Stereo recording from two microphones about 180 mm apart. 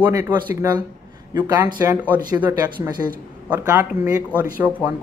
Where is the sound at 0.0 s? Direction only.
10° right (ahead or behind).